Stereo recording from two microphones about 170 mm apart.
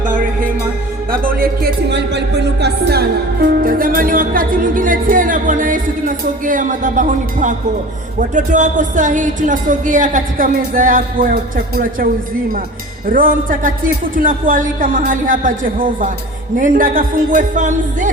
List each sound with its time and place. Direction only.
0.0 s music: 50° right (ahead or behind)
8.3 s speech: 50° right (ahead or behind)
13.1 s speech: 55° right (ahead or behind)